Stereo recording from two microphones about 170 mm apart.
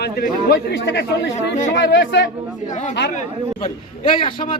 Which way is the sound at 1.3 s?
40° left (ahead or behind).